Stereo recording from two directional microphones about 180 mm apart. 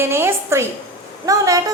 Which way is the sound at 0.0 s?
15° right (ahead or behind).